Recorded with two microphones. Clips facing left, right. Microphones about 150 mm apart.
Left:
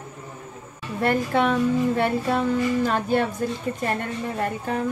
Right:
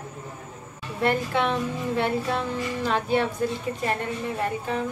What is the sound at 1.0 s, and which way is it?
A woman's voice, 45° left (ahead or behind).